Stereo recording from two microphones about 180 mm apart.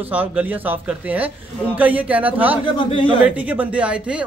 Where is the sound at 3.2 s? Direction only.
10° right (ahead or behind).